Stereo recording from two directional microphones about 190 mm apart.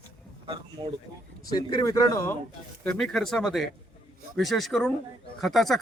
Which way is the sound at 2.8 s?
Centre (ahead or behind).